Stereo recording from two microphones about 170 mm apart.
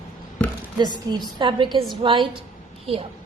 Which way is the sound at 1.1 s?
25° right (ahead or behind).